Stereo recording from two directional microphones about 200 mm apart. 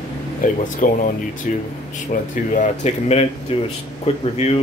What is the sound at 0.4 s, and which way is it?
Speech, 40° left (ahead or behind).